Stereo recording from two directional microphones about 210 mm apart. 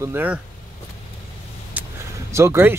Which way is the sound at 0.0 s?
10° right (ahead or behind).